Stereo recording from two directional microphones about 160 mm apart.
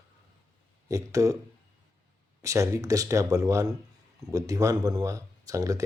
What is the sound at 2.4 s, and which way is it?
Speech, 20° right (ahead or behind).